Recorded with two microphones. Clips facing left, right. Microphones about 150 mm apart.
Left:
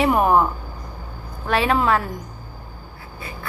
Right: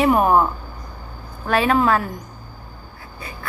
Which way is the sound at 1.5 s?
25° left (ahead or behind).